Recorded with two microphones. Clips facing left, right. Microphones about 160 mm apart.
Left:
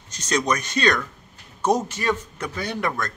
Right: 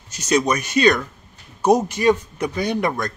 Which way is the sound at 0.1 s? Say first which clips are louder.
Right 4 dB; 10° right (ahead or behind).